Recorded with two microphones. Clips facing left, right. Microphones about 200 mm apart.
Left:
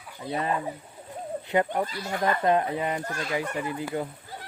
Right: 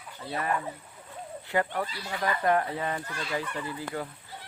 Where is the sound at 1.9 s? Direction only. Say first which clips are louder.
Left 5 dB; 45° left (ahead or behind).